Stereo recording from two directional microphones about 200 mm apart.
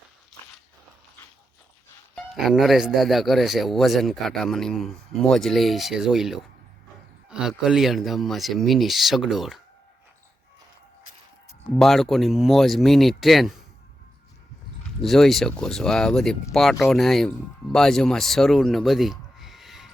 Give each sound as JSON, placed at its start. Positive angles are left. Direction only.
{"t": 2.1, "sound": "speech", "side_deg": 0}
{"t": 11.8, "sound": "speech", "side_deg": 0}
{"t": 15.0, "sound": "speech", "side_deg": 0}